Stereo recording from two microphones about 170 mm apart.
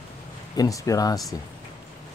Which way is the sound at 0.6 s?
20° left (ahead or behind).